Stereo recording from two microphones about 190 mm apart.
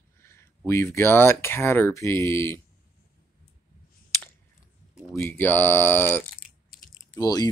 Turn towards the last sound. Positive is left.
turn(degrees=20)  # may be behind; listen again after turning